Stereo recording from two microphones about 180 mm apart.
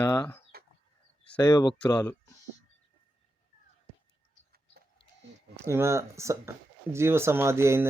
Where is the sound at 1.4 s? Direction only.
20° left (ahead or behind).